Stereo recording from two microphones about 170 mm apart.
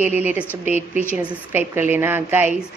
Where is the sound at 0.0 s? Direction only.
10° right (ahead or behind).